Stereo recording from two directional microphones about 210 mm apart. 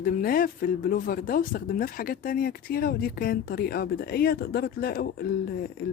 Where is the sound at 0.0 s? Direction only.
45° left (ahead or behind).